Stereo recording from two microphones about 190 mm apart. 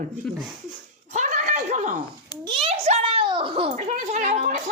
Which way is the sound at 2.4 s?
30° right (ahead or behind).